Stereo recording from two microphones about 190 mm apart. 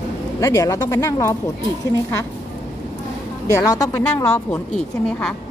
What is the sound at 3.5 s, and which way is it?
A woman's voice, 15° left (ahead or behind).